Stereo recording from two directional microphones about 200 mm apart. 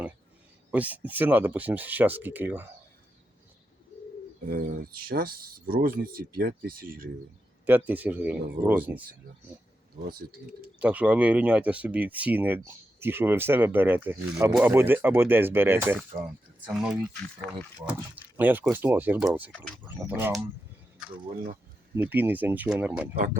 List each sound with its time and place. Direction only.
0.7 s speech: 10° right (ahead or behind)
4.4 s speech: 45° right (ahead or behind)
7.6 s speech: 10° right (ahead or behind)
10.0 s speech: 50° right (ahead or behind)
10.8 s speech: 5° right (ahead or behind)
21.9 s speech: 10° right (ahead or behind)
23.1 s speech: 40° right (ahead or behind)